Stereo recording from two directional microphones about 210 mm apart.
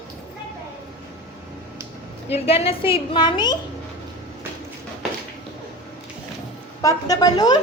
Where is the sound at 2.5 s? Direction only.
25° left (ahead or behind).